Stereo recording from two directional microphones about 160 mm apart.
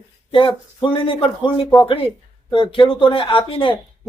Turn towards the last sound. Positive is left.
turn(degrees=35)  # may be behind; listen again after turning